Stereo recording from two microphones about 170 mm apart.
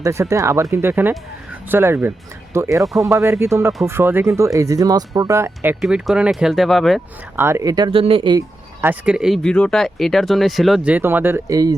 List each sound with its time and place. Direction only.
0.0 s speech: 15° right (ahead or behind)
5.8 s speech: 5° right (ahead or behind)
7.3 s speech: 15° right (ahead or behind)
7.9 s speech: 30° right (ahead or behind)
8.8 s speech: 10° right (ahead or behind)